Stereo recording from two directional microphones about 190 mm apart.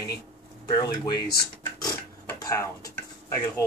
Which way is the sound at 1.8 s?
20° left (ahead or behind).